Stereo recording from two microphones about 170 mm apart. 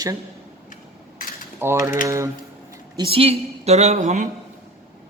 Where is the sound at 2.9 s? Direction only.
30° right (ahead or behind).